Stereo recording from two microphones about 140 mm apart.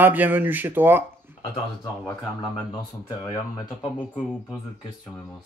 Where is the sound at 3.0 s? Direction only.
25° left (ahead or behind).